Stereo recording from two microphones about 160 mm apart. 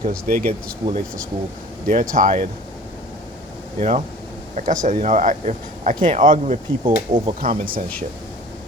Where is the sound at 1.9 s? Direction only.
55° right (ahead or behind).